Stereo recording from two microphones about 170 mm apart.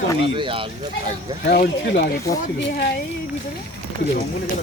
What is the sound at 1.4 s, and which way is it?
Speech, 65° left (ahead or behind).